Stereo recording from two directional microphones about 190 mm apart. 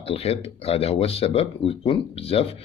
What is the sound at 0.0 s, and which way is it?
Speech, 30° left (ahead or behind).